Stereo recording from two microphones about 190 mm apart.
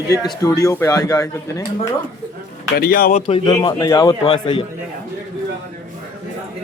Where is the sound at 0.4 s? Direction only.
15° left (ahead or behind).